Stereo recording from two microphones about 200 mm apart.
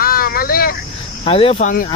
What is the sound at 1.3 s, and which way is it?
Speech, 30° left (ahead or behind).